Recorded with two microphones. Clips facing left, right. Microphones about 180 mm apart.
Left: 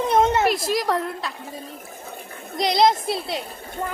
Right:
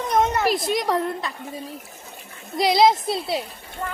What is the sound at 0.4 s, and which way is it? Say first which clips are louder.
Speech: even; centre (ahead or behind).